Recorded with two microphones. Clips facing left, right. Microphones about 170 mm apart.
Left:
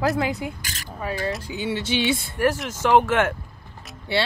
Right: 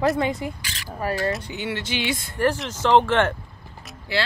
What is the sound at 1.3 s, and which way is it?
Speech, 5° left (ahead or behind).